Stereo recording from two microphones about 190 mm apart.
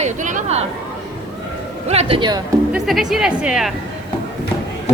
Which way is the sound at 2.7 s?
Centre (ahead or behind).